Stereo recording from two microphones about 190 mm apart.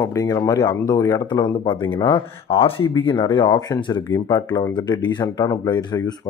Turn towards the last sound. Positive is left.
turn(degrees=20)  # may be behind; listen again after turning